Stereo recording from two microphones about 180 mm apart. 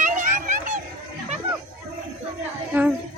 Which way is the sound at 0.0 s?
45° right (ahead or behind).